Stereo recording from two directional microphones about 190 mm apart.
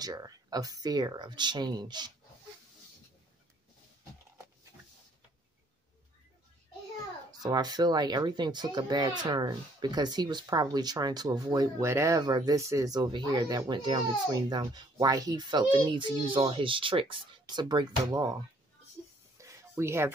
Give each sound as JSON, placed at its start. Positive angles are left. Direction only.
{"t": 0.0, "sound": "speech", "side_deg": -20}
{"t": 7.4, "sound": "speech", "side_deg": -20}
{"t": 19.3, "sound": "a sound", "side_deg": -15}